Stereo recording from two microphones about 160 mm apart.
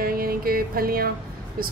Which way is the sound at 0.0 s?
65° right (ahead or behind).